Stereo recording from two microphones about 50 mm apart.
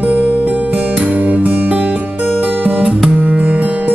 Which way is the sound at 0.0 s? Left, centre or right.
Right.